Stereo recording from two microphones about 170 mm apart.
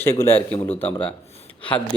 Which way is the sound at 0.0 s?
15° left (ahead or behind).